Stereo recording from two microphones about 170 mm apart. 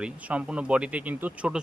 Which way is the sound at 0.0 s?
5° right (ahead or behind).